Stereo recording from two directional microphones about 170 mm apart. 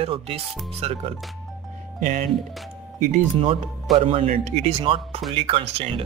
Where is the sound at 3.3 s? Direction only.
35° right (ahead or behind).